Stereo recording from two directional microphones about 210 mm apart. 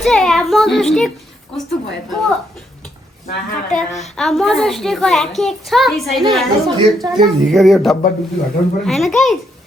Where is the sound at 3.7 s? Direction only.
35° left (ahead or behind).